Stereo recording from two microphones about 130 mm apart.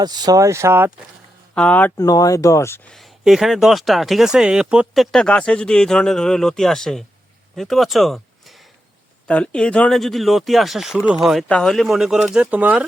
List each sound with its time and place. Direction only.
0.0 s speech: 30° right (ahead or behind)
1.5 s speech: 10° left (ahead or behind)
2.0 s speech: 30° left (ahead or behind)
2.9 s speech: centre (ahead or behind)
5.1 s speech: 5° left (ahead or behind); by 12.8 s 10° right (ahead or behind)